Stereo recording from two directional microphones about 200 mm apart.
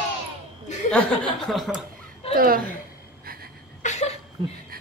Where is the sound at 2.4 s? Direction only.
45° right (ahead or behind).